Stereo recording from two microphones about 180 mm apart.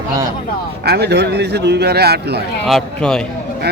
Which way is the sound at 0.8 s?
65° right (ahead or behind).